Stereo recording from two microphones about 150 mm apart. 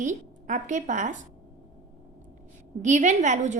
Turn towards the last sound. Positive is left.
turn(degrees=-50)  # may be behind; listen again after turning